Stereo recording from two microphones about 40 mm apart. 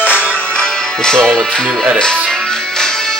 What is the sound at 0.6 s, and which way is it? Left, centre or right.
Music, centre.